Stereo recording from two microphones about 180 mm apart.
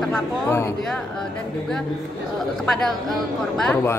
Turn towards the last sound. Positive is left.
turn(degrees=0)  # may be behind; listen again after turning